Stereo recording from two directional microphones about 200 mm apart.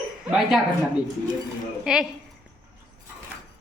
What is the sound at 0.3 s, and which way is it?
Speech, centre (ahead or behind).